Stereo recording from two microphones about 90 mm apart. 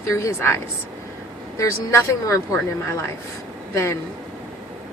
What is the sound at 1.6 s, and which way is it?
Speech, 35° left (ahead or behind).